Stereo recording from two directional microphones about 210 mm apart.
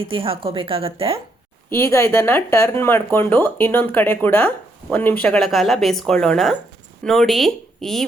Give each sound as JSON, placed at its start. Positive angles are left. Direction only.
{"t": 0.0, "sound": "a woman's voice", "side_deg": -25}
{"t": 1.7, "sound": "speech", "side_deg": 10}